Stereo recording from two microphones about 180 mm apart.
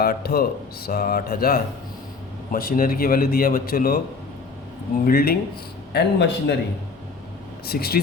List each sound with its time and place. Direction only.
0.0 s a man's voice: 60° left (ahead or behind)
5.0 s speech: 55° left (ahead or behind)
5.9 s speech: 70° left (ahead or behind)
7.7 s speech: 60° left (ahead or behind)